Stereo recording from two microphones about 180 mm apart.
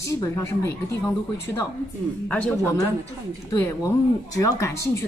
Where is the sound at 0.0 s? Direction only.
15° left (ahead or behind).